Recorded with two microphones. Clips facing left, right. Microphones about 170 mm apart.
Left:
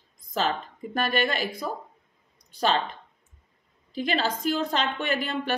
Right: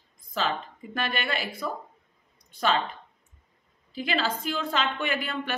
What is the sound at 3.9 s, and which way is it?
Speech, 40° left (ahead or behind).